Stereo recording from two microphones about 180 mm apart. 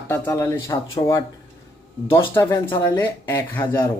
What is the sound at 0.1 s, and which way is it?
Speech, 15° left (ahead or behind).